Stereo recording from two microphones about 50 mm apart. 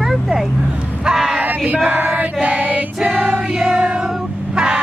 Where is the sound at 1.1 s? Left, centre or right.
Centre.